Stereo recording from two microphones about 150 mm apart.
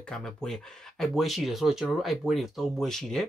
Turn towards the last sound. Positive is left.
turn(degrees=5)  # may be behind; listen again after turning